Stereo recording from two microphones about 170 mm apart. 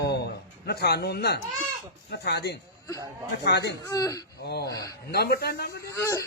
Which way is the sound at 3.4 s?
80° left.